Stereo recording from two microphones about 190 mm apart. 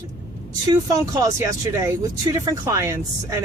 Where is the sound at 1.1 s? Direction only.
15° right (ahead or behind).